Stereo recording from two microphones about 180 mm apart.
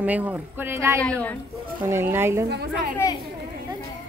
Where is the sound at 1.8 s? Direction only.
10° right (ahead or behind).